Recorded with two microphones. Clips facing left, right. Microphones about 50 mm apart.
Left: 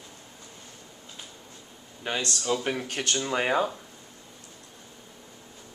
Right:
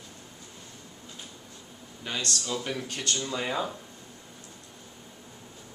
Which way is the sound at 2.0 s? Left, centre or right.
Left.